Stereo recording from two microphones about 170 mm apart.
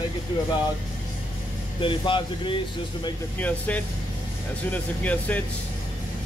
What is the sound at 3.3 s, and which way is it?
Speech, 10° left (ahead or behind).